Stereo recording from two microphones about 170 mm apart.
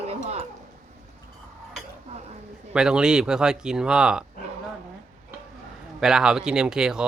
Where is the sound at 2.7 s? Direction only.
5° right (ahead or behind).